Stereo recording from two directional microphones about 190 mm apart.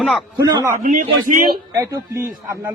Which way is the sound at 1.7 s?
15° right (ahead or behind).